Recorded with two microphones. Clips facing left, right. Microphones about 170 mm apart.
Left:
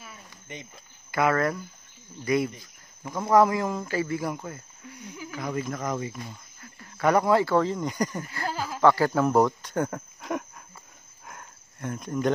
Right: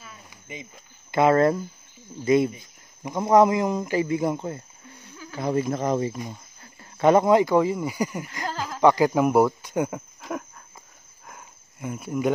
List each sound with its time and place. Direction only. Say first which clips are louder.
0.3 s cricket: right 3 dB; 5° right (ahead or behind)
1.1 s speech: right 6 dB; 25° right (ahead or behind)
8.5 s a sound: left 1 dB; 10° left (ahead or behind)
8.8 s speech: right 3 dB; 15° right (ahead or behind)
11.2 s cricket: even; 5° right (ahead or behind)